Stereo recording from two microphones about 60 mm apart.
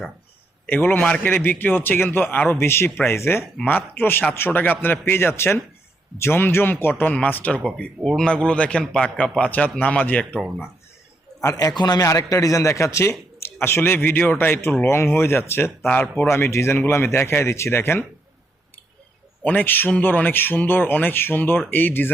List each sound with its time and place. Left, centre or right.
0.7 s a man's voice: left
3.7 s a man's voice: left
8.0 s speech: centre
11.4 s a man's voice: left
12.0 s a man's voice: left
19.4 s a man's voice: left